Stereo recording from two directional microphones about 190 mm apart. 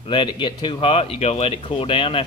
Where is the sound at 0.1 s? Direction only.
25° left (ahead or behind).